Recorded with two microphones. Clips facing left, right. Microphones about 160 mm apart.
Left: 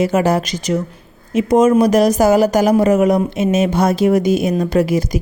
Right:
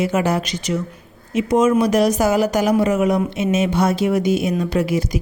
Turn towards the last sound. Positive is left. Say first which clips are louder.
# left 4 dB
turn(degrees=40)  # may be behind; listen again after turning